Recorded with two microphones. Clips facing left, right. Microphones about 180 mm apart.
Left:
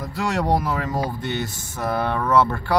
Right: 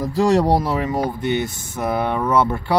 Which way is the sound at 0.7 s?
20° right (ahead or behind).